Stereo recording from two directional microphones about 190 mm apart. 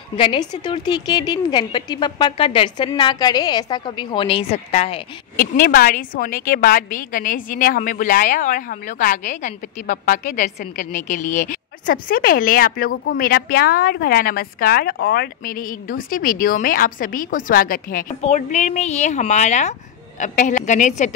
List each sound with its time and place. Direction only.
0.2 s a woman's voice: 25° left (ahead or behind)
5.4 s a woman's voice: 50° left (ahead or behind)
18.2 s a woman's voice: 35° left (ahead or behind)